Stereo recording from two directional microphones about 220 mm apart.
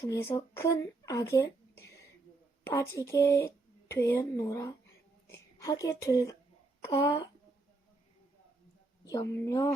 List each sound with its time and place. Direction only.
0.0 s speech: 15° left (ahead or behind)
9.3 s speech: 10° left (ahead or behind)